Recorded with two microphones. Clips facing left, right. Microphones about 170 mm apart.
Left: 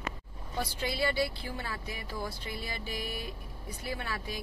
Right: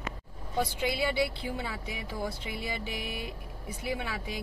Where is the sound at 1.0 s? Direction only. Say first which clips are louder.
Left 1 dB; 20° right (ahead or behind).